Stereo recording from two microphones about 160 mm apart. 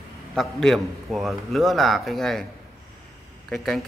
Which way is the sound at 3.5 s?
Centre (ahead or behind).